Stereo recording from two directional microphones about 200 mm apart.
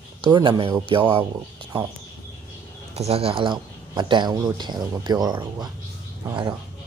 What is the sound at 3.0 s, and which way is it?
A man's voice, 30° right (ahead or behind).